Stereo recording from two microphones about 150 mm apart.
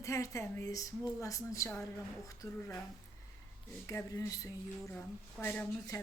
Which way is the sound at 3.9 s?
20° left (ahead or behind).